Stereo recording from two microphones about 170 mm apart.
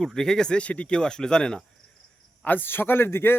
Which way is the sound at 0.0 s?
5° left (ahead or behind).